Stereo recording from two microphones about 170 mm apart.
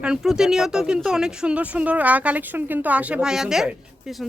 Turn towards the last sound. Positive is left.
turn(degrees=0)  # may be behind; listen again after turning